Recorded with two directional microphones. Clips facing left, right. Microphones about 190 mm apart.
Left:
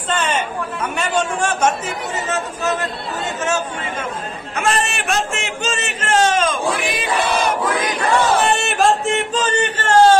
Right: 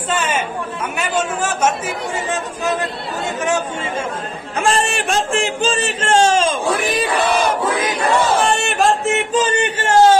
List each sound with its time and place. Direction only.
0.1 s chatter: 5° right (ahead or behind)
2.2 s speech: 15° right (ahead or behind)
4.6 s speech: 30° right (ahead or behind)
8.5 s a sound: centre (ahead or behind)